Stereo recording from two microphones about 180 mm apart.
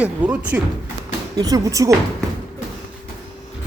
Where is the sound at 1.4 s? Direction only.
20° right (ahead or behind).